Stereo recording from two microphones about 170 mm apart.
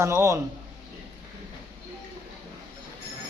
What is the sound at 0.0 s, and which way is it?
Speech, 15° right (ahead or behind).